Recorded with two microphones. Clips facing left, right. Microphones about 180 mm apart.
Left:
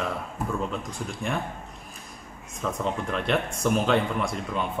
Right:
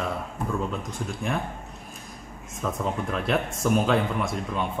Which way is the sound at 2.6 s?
5° right (ahead or behind).